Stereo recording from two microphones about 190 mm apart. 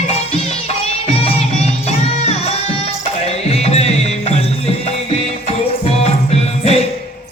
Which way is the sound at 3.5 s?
35° left (ahead or behind).